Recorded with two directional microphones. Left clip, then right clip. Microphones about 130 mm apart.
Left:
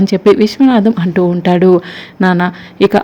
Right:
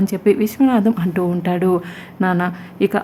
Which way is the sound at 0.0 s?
25° left (ahead or behind).